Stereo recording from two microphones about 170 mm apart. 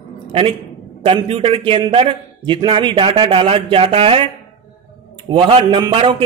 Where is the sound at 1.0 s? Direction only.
30° right (ahead or behind).